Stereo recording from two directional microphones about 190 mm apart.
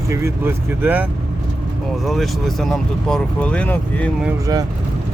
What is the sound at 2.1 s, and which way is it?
Speech, centre (ahead or behind).